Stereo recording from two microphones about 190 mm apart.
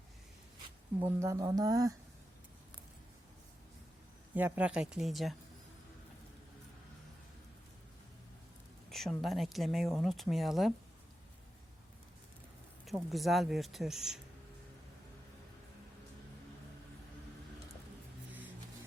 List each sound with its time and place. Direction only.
0.9 s speech: 15° right (ahead or behind)
4.4 s speech: 10° right (ahead or behind)
8.9 s speech: centre (ahead or behind)
12.8 s speech: centre (ahead or behind)